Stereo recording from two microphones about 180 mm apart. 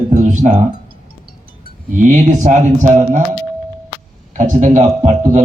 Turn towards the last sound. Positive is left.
turn(degrees=-45)  # may be behind; listen again after turning